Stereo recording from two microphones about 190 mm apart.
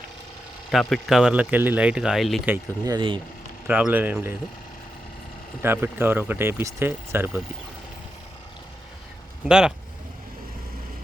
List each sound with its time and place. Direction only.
0.7 s speech: centre (ahead or behind)
2.8 s speech: 25° right (ahead or behind)
3.7 s speech: 10° right (ahead or behind)
5.6 s speech: 10° right (ahead or behind)
9.5 s speech: 5° right (ahead or behind)